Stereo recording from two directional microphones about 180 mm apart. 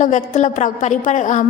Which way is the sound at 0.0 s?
45° left (ahead or behind).